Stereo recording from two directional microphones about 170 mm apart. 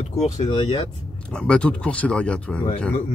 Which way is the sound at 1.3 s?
5° left (ahead or behind).